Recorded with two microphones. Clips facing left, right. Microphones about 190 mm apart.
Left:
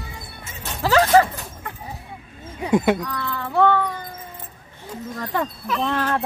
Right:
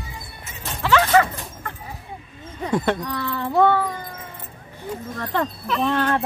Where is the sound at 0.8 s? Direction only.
40° left (ahead or behind).